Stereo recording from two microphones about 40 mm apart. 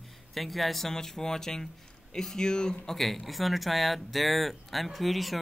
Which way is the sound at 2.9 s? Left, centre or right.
Centre.